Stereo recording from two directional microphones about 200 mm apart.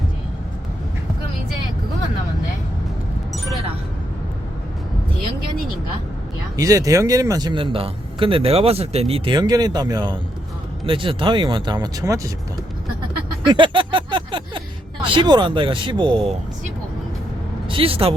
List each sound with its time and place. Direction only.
6.6 s speech: 15° right (ahead or behind)
13.4 s a sound: 25° right (ahead or behind)
15.0 s speech: 25° right (ahead or behind)
17.7 s a woman's voice: 25° right (ahead or behind)